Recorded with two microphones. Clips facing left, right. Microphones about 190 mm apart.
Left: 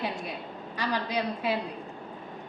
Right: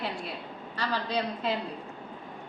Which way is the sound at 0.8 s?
10° left (ahead or behind).